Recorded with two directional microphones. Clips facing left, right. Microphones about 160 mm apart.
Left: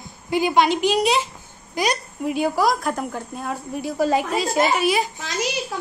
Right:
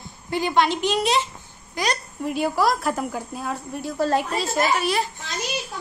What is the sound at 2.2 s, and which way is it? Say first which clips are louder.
A woman's voice: left 1 dB; centre (ahead or behind).